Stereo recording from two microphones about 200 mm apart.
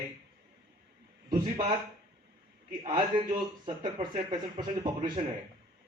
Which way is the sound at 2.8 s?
20° right (ahead or behind).